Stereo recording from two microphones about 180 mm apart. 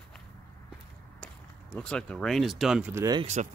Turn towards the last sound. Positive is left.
turn(degrees=-40)  # may be behind; listen again after turning